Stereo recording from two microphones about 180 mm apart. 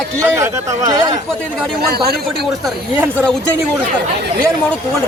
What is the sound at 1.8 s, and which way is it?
Speech, 60° right (ahead or behind).